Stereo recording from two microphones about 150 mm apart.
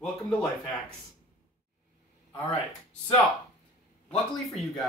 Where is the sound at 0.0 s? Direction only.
10° left (ahead or behind).